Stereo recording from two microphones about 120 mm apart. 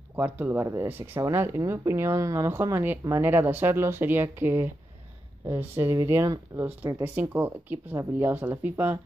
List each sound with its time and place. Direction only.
0.1 s speech: 15° right (ahead or behind)